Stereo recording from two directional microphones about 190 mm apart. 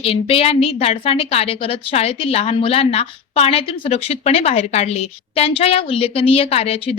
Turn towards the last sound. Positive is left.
turn(degrees=30)  # may be behind; listen again after turning